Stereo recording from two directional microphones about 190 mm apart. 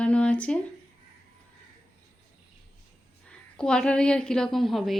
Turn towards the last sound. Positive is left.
turn(degrees=0)  # may be behind; listen again after turning